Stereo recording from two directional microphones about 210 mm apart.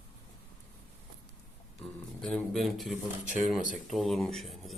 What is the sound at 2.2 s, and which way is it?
Speech, 5° left (ahead or behind).